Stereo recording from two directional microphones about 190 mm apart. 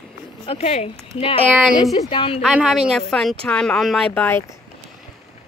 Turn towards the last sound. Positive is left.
turn(degrees=10)  # may be behind; listen again after turning